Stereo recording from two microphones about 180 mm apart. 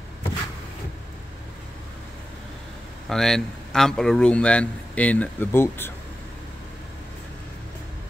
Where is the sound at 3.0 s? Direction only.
Centre (ahead or behind).